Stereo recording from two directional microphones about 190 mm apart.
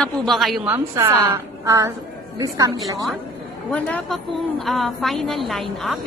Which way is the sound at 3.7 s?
5° left (ahead or behind).